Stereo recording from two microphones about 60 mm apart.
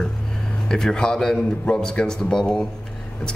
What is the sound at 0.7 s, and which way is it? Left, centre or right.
Speech, centre.